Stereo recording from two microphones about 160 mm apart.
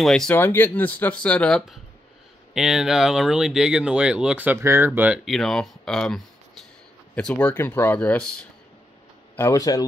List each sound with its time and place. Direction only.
0.0 s speech: 5° left (ahead or behind)
9.4 s speech: 20° left (ahead or behind)